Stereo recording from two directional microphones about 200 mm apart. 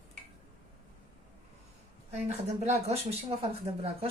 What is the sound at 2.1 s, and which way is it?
A woman's voice, 35° right (ahead or behind).